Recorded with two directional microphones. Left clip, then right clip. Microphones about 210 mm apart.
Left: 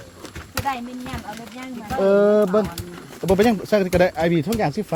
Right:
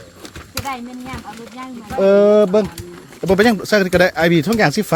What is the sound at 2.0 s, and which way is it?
Speech, 30° right (ahead or behind).